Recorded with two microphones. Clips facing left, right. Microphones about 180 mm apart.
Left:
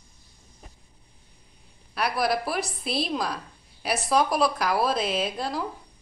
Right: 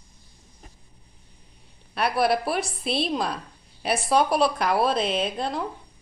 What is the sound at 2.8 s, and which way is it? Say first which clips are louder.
Speech: right 2 dB; centre (ahead or behind).